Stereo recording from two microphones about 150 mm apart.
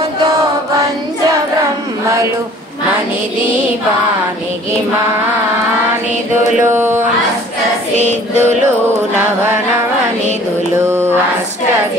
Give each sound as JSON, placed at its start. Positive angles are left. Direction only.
{"t": 6.6, "sound": "speech", "side_deg": -15}
{"t": 8.0, "sound": "music", "side_deg": -50}
{"t": 10.8, "sound": "mantra", "side_deg": -20}